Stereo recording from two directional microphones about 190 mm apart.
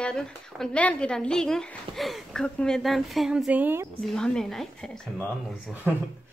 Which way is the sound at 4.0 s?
5° left (ahead or behind).